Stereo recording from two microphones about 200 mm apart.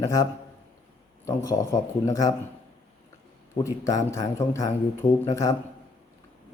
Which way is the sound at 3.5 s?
15° left (ahead or behind).